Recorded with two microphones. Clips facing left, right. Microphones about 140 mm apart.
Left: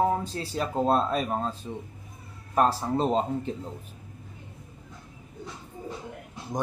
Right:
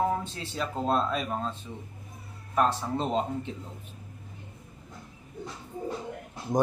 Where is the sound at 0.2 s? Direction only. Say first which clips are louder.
Left 3 dB; 40° left (ahead or behind).